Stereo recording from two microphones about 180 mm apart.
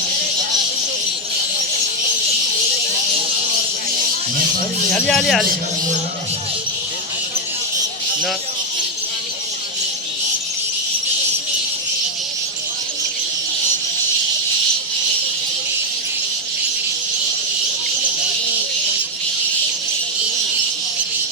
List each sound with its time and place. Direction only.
4.9 s a man's voice: 5° left (ahead or behind)